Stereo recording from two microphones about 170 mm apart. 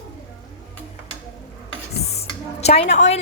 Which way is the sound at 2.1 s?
35° left (ahead or behind).